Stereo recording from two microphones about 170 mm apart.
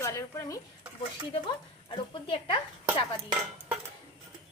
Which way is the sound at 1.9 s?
30° left (ahead or behind).